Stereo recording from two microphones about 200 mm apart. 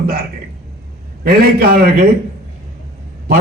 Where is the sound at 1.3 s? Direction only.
50° right (ahead or behind).